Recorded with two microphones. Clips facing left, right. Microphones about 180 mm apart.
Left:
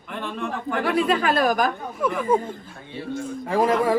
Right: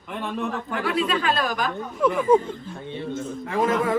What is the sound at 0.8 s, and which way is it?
Speech, 55° left (ahead or behind).